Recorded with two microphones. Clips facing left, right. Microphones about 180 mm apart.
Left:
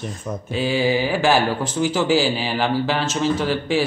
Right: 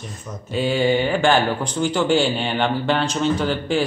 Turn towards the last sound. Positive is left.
turn(degrees=5)  # may be behind; listen again after turning